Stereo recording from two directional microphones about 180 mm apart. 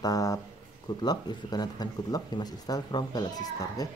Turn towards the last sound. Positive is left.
turn(degrees=20)  # may be behind; listen again after turning